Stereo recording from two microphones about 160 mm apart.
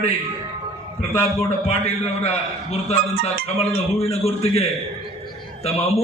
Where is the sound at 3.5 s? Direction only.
40° left (ahead or behind).